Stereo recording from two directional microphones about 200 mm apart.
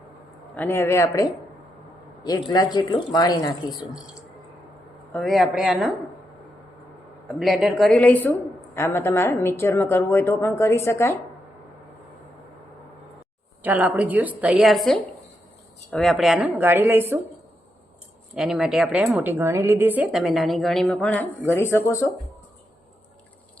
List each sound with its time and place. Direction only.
0.5 s a woman's voice: 10° left (ahead or behind)
5.1 s a woman's voice: centre (ahead or behind)
7.3 s a woman's voice: centre (ahead or behind)
13.6 s a woman's voice: 10° right (ahead or behind)
18.3 s a woman's voice: centre (ahead or behind); by 22.1 s 15° left (ahead or behind)